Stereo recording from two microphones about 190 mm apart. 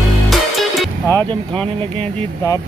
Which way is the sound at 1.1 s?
20° right (ahead or behind).